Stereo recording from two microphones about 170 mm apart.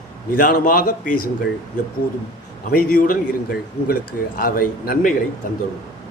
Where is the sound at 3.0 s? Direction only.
55° left (ahead or behind).